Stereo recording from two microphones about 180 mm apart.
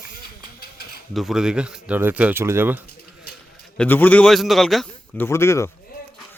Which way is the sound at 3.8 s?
10° left (ahead or behind).